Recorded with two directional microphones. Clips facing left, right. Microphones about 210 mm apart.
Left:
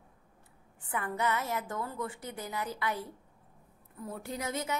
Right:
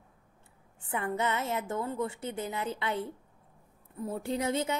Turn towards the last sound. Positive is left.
turn(degrees=-30)  # may be behind; listen again after turning